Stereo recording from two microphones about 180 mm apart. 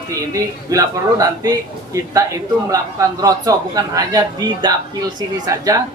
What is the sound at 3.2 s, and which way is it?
A man's voice, 20° right (ahead or behind).